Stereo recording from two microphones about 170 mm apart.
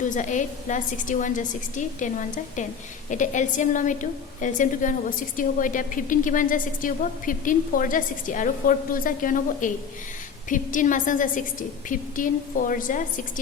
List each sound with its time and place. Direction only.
0.1 s a woman's voice: 45° left (ahead or behind)